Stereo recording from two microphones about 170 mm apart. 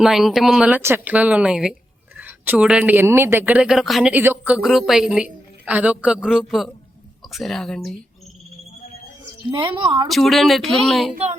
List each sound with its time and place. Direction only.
0.0 s speech: centre (ahead or behind)
9.5 s a woman's voice: 30° right (ahead or behind)
10.1 s speech: centre (ahead or behind)